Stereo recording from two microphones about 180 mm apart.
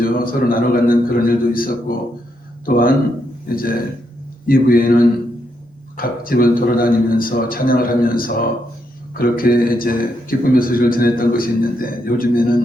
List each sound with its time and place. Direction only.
0.0 s a man's voice: 55° left (ahead or behind)